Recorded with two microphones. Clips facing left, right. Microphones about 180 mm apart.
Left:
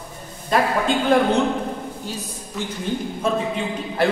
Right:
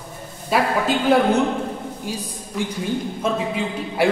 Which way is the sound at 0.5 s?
5° right (ahead or behind).